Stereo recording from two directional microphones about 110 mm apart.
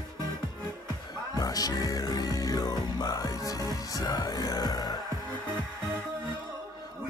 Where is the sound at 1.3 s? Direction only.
35° left (ahead or behind).